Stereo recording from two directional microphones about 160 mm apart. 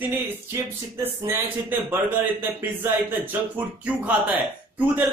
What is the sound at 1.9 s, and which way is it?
Speech, 10° right (ahead or behind).